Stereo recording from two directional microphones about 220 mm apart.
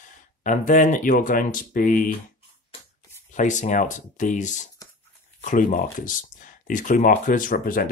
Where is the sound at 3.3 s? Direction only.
35° left (ahead or behind).